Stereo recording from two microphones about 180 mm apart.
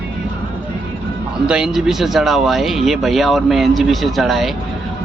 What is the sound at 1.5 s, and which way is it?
Speech, 5° right (ahead or behind).